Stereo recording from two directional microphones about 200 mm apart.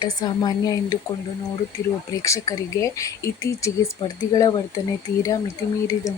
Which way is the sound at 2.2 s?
15° left (ahead or behind).